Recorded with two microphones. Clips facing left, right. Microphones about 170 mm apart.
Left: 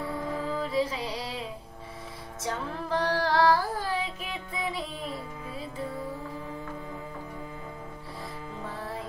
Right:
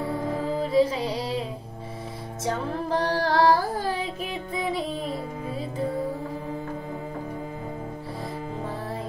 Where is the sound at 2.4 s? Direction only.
35° right (ahead or behind).